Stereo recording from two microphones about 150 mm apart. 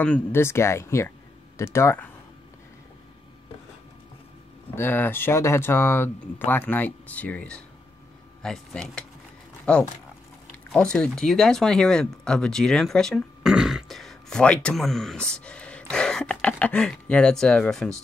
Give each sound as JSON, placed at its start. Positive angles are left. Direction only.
{"t": 0.0, "sound": "speech", "side_deg": 10}
{"t": 4.7, "sound": "speech", "side_deg": 15}